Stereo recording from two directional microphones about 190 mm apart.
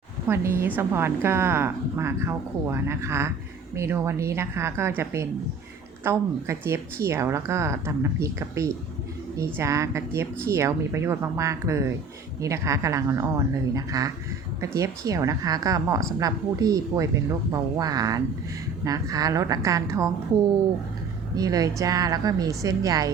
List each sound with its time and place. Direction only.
0.3 s a woman's voice: 10° right (ahead or behind)
21.3 s speech: 20° right (ahead or behind)